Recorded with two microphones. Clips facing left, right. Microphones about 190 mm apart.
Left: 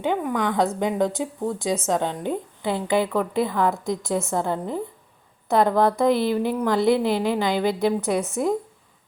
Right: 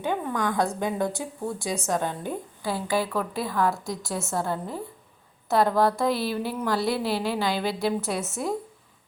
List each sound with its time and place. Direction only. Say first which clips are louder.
0.0 s a woman's voice: left 4 dB; 15° left (ahead or behind)